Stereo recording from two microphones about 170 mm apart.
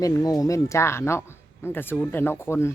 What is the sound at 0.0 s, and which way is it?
A woman's voice, 20° left (ahead or behind).